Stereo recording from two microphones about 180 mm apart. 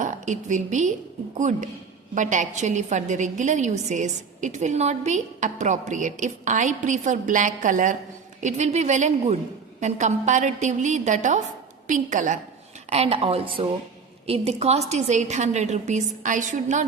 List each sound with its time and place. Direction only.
0.0 s a woman's voice: 45° right (ahead or behind)
12.9 s a woman's voice: 30° right (ahead or behind)